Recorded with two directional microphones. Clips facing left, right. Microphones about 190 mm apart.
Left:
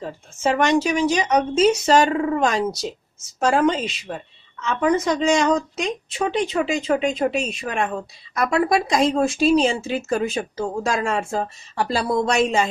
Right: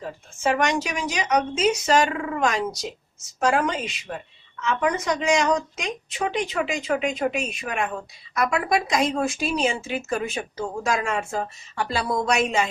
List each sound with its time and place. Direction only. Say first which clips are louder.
0.0 s a woman's voice: left 2 dB; 25° left (ahead or behind)